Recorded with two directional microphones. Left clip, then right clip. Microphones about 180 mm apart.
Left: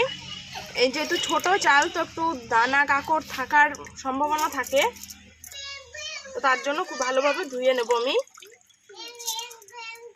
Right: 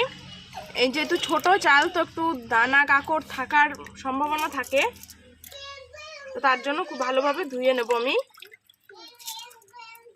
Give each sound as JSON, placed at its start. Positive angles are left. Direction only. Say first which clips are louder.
{"t": 0.7, "sound": "speech", "louder": "even", "side_deg": -30}
{"t": 6.3, "sound": "speech", "louder": "even", "side_deg": -15}